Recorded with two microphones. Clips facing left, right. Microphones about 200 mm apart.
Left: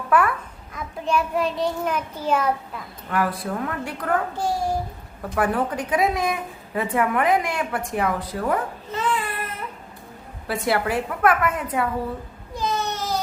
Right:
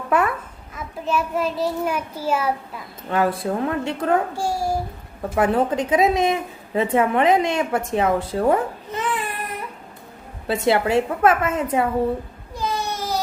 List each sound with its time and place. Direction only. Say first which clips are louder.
0.1 s a child's voice: even; 25° right (ahead or behind)
1.0 s a child's voice: even; centre (ahead or behind)
3.1 s a woman's voice: right 4 dB; 25° right (ahead or behind)
4.4 s a child's voice: right 1 dB; 10° right (ahead or behind)
5.3 s a woman's voice: right 4 dB; 25° right (ahead or behind)
10.4 s a woman's voice: right 4 dB; 25° right (ahead or behind)
12.5 s baby cry: even; 10° right (ahead or behind)